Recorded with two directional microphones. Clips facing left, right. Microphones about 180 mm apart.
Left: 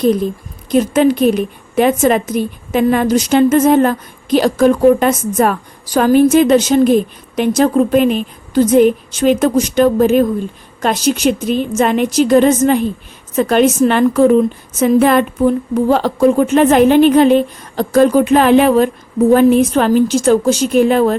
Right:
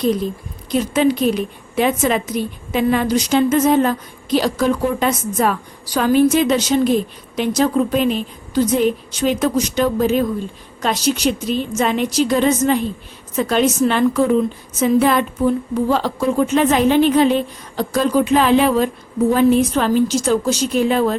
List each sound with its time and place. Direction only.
0.7 s a woman's voice: 50° left (ahead or behind)